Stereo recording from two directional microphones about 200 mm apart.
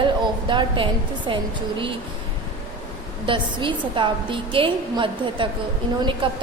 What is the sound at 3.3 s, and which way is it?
A woman's voice, 25° right (ahead or behind).